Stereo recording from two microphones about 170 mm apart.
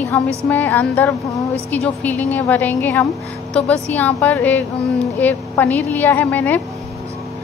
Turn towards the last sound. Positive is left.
turn(degrees=10)  # may be behind; listen again after turning